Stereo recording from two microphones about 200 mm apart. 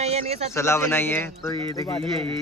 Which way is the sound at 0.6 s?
15° left (ahead or behind).